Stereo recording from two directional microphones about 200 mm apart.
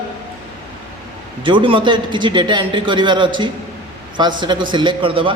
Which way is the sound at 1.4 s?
25° right (ahead or behind).